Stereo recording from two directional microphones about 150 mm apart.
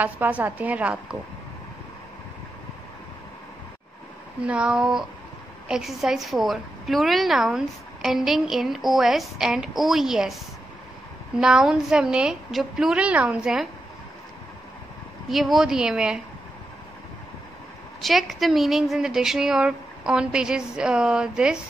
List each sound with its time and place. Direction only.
0.0 s a woman's voice: 10° right (ahead or behind)
4.5 s a woman's voice: 5° right (ahead or behind)
11.3 s a woman's voice: 5° right (ahead or behind)
15.2 s a woman's voice: centre (ahead or behind)
18.0 s a woman's voice: centre (ahead or behind)